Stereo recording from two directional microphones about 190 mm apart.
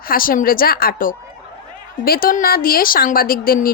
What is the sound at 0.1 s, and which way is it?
A woman's voice, 50° left (ahead or behind).